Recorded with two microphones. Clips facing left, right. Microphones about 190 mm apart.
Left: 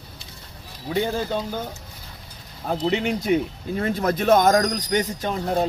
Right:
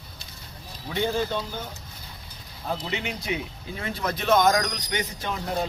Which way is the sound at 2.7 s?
45° left (ahead or behind).